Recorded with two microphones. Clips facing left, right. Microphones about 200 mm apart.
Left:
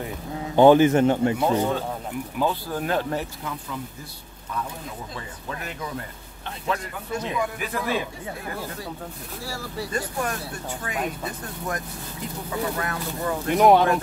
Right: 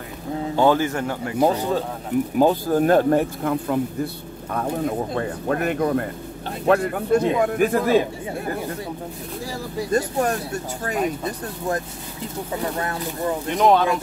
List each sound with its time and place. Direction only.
0.6 s speech: 20° left (ahead or behind)
1.4 s speech: 35° right (ahead or behind)
9.8 s speech: 40° right (ahead or behind)
12.7 s speech: 25° right (ahead or behind)
13.6 s speech: 15° left (ahead or behind)